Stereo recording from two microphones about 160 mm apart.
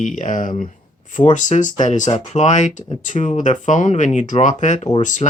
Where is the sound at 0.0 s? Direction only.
50° left (ahead or behind).